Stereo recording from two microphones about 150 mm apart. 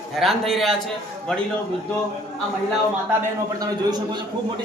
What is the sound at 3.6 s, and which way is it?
Speech, 25° right (ahead or behind).